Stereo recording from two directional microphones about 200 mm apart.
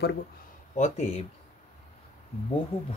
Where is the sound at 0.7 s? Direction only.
35° left (ahead or behind).